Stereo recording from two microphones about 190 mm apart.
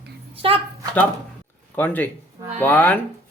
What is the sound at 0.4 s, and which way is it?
Speech, 30° right (ahead or behind).